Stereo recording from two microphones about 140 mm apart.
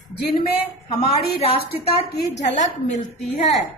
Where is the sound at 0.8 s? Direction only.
40° left (ahead or behind).